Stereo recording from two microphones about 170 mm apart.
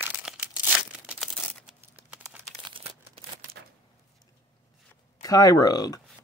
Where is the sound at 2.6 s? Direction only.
30° right (ahead or behind).